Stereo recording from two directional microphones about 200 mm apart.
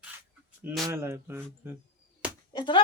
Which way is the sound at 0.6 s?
10° right (ahead or behind).